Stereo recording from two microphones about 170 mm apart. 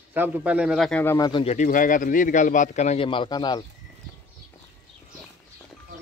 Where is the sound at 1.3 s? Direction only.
35° left (ahead or behind).